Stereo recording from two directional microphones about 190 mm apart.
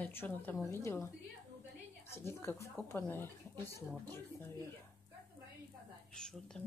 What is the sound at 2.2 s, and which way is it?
Speech, 15° left (ahead or behind).